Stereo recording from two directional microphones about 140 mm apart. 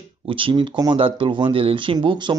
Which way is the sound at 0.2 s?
40° right (ahead or behind).